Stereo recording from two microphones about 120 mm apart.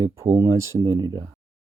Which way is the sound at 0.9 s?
35° right (ahead or behind).